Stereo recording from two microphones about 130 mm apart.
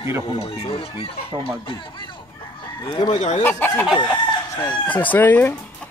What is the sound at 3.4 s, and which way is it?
Speech, 15° left (ahead or behind).